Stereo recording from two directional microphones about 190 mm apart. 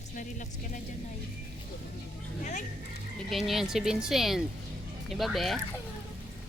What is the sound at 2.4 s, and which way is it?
Speech, 40° left (ahead or behind).